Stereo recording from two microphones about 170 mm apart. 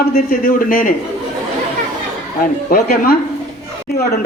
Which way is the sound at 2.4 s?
60° left (ahead or behind).